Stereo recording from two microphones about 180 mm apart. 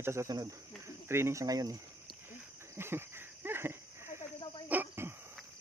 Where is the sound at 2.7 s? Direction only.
15° right (ahead or behind).